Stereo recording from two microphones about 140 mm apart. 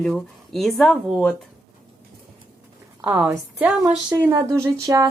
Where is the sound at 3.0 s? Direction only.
5° right (ahead or behind).